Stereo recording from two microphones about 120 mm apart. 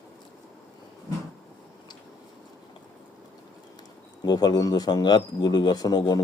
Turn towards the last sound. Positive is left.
turn(degrees=35)  # may be behind; listen again after turning